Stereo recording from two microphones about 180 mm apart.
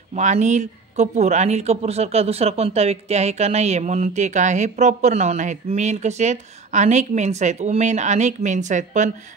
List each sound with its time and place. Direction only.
0.1 s speech: 40° right (ahead or behind)